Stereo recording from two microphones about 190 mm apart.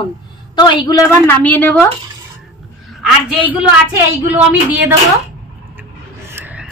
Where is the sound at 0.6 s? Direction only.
20° left (ahead or behind).